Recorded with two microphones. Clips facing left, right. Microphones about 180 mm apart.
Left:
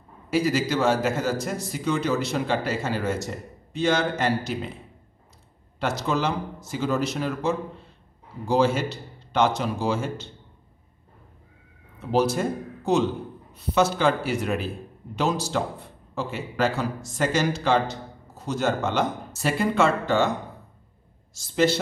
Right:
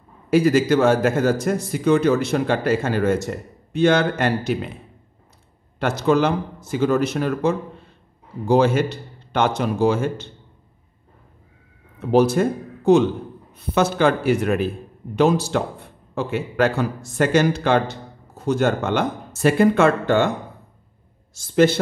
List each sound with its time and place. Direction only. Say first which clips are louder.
0.3 s a man's voice: right 7 dB; 50° right (ahead or behind)
5.8 s a man's voice: right 7 dB; 55° right (ahead or behind)
12.1 s a man's voice: right 6 dB; 55° right (ahead or behind)